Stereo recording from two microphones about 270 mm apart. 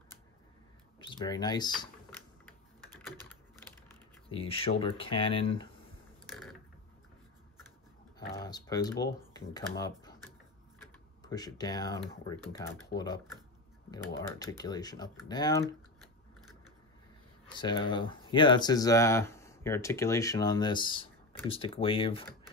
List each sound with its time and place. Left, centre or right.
0.9 s speech: centre
3.3 s typing: centre
4.3 s speech: left
8.4 s speech: centre
11.2 s speech: centre
17.5 s speech: centre